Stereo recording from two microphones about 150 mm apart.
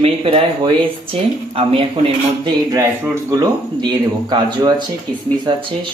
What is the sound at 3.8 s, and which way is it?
Speech, 30° right (ahead or behind).